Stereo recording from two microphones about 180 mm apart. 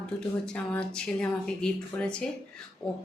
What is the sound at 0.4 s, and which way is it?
Speech, 5° left (ahead or behind).